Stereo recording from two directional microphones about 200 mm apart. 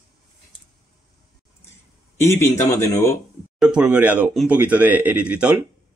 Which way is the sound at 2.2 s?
10° left (ahead or behind).